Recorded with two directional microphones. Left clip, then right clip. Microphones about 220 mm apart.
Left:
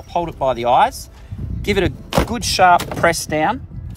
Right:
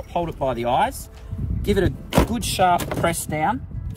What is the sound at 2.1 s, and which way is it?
Speech, 20° left (ahead or behind).